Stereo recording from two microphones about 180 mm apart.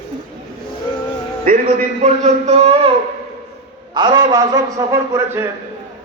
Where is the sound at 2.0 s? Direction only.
40° right (ahead or behind).